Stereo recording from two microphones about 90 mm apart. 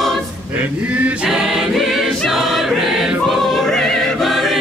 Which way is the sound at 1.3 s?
5° right (ahead or behind).